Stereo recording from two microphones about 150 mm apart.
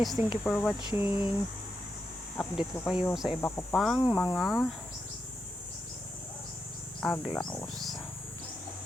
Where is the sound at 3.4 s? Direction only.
10° left (ahead or behind).